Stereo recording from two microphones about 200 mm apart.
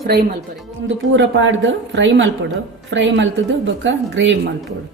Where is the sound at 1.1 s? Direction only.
70° right (ahead or behind).